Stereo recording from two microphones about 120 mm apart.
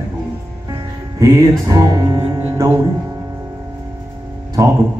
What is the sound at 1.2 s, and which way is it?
Music, 30° right (ahead or behind).